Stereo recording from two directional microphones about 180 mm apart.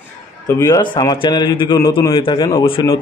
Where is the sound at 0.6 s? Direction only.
20° left (ahead or behind).